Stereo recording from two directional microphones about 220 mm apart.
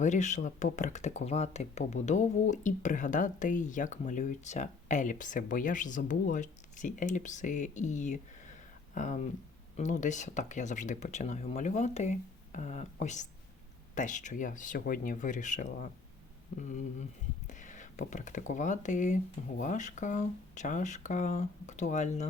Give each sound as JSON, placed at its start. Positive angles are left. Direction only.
{"t": 0.0, "sound": "speech", "side_deg": 30}